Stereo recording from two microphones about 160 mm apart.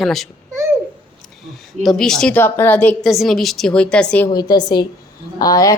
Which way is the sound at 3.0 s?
Centre (ahead or behind).